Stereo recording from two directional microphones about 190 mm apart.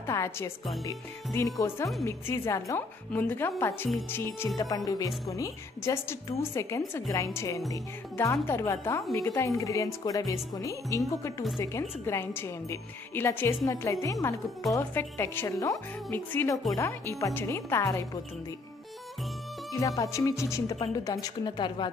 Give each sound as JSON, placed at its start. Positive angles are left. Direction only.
{"t": 0.0, "sound": "music", "side_deg": 15}
{"t": 0.8, "sound": "a woman's voice", "side_deg": 15}
{"t": 19.7, "sound": "a woman's voice", "side_deg": 15}